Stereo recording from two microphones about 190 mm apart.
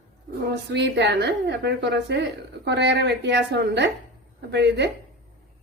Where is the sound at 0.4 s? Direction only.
65° right (ahead or behind).